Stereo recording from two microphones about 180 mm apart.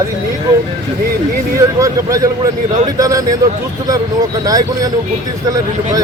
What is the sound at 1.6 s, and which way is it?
Speech, 20° right (ahead or behind).